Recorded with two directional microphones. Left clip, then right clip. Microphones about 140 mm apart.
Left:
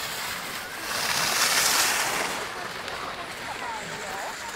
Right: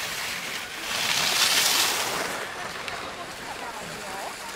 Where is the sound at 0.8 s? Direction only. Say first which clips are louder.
Right 1 dB; 30° left (ahead or behind); by 2.4 s 55° left (ahead or behind).